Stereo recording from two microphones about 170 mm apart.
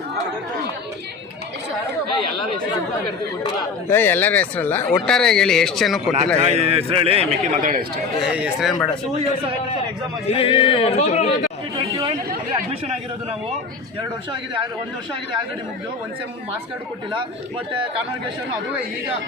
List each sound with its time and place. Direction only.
3.8 s speech: 15° left (ahead or behind)
6.5 s a man's voice: 35° right (ahead or behind)
8.2 s speech: 5° right (ahead or behind)
10.2 s speech: 35° left (ahead or behind)
11.8 s a man's voice: 30° right (ahead or behind)